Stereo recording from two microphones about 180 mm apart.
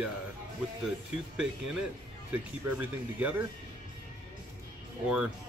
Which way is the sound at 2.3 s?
10° right (ahead or behind).